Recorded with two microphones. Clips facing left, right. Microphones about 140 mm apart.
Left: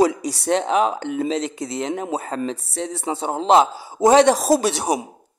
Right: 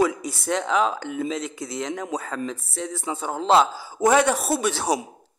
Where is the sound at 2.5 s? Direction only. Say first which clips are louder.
Left 4 dB; 70° left (ahead or behind).